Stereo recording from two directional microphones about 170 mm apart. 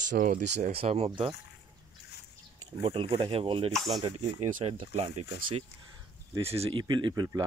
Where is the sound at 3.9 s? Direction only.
30° right (ahead or behind).